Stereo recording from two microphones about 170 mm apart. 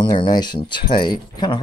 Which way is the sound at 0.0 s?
25° left (ahead or behind).